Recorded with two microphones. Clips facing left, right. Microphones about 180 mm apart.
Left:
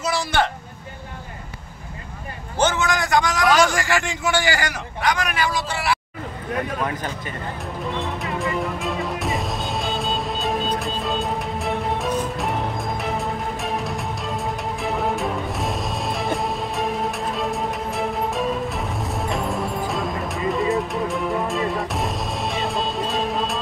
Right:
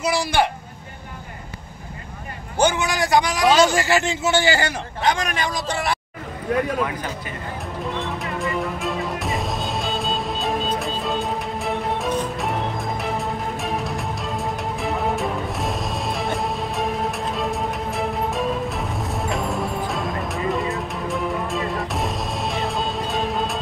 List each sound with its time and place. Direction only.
2.6 s a man's voice: 15° right (ahead or behind); by 5.8 s 35° right (ahead or behind)
7.8 s music: centre (ahead or behind)